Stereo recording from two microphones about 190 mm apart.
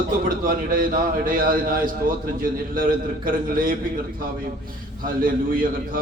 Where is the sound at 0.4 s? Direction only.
45° right (ahead or behind).